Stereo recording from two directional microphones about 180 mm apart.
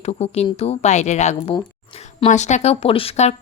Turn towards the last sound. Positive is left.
turn(degrees=35)  # may be behind; listen again after turning